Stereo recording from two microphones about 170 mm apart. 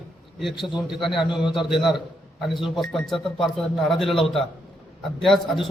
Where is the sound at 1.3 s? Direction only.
30° left (ahead or behind).